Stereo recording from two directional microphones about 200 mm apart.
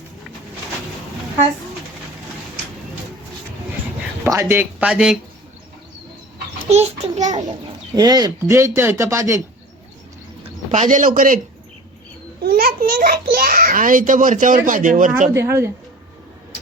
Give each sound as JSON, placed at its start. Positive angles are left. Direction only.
{"t": 4.2, "sound": "speech", "side_deg": -15}
{"t": 6.7, "sound": "a child's voice", "side_deg": -35}
{"t": 7.9, "sound": "speech", "side_deg": -20}
{"t": 10.7, "sound": "a child's voice", "side_deg": -40}
{"t": 12.4, "sound": "a child's voice", "side_deg": -50}
{"t": 15.3, "sound": "speech", "side_deg": -15}